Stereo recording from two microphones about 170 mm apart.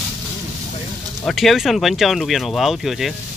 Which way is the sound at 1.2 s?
Centre (ahead or behind).